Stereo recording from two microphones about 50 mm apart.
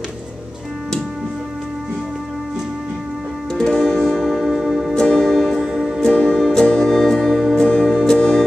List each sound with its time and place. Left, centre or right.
3.5 s music: centre
4.9 s music: centre
5.6 s music: centre
5.9 s music: centre
7.5 s music: centre